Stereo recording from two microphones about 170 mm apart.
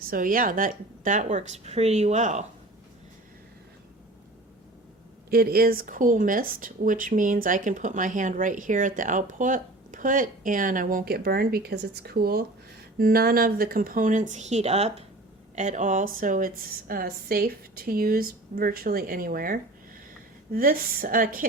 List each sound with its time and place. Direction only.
0.0 s speech: 55° right (ahead or behind)
5.3 s a woman's voice: 60° right (ahead or behind)